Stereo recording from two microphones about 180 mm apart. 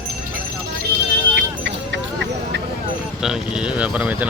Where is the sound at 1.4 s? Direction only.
75° right (ahead or behind).